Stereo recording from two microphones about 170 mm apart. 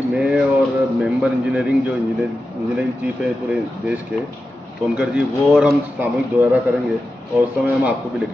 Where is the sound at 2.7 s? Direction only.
5° right (ahead or behind).